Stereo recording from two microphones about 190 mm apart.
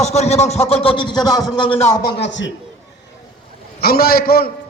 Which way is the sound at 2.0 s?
70° left (ahead or behind).